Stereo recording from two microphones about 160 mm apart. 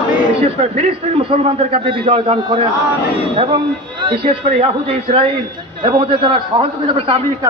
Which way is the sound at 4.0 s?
35° right (ahead or behind).